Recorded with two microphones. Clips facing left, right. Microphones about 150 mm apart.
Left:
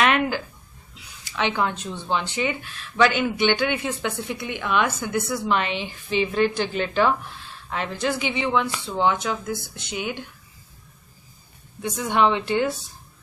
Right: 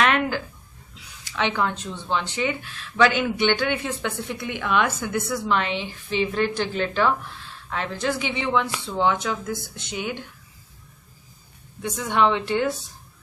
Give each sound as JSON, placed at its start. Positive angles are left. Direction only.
{"t": 0.0, "sound": "a sound", "side_deg": 10}
{"t": 1.3, "sound": "a woman's voice", "side_deg": 10}
{"t": 11.8, "sound": "speech", "side_deg": 10}